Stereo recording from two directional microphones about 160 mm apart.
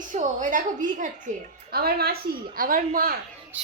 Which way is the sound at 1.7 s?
75° right (ahead or behind).